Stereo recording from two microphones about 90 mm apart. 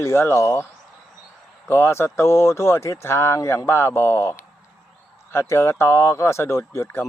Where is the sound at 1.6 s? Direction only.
25° left (ahead or behind).